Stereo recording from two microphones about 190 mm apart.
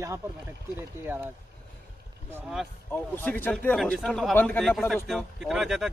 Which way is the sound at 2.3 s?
5° right (ahead or behind).